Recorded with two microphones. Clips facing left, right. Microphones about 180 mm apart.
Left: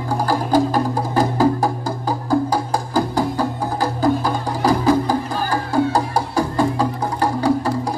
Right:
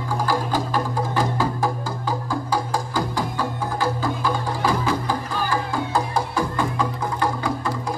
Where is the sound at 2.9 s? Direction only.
40° left (ahead or behind).